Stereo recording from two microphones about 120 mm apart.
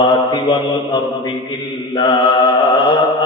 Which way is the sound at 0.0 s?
40° left (ahead or behind).